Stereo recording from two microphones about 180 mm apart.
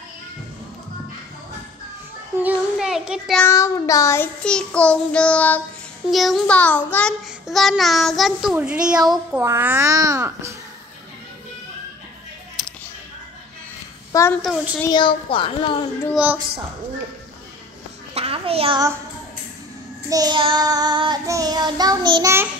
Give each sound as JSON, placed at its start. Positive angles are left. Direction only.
{"t": 2.4, "sound": "child singing", "side_deg": -5}
{"t": 3.4, "sound": "child singing", "side_deg": 15}
{"t": 4.5, "sound": "child singing", "side_deg": 5}
{"t": 6.0, "sound": "a child's voice", "side_deg": 0}
{"t": 9.4, "sound": "a child's voice", "side_deg": -15}
{"t": 14.1, "sound": "child singing", "side_deg": 15}
{"t": 14.4, "sound": "a child's voice", "side_deg": -5}
{"t": 14.9, "sound": "a child's voice", "side_deg": 25}
{"t": 18.1, "sound": "a sound", "side_deg": -30}
{"t": 20.1, "sound": "child singing", "side_deg": -20}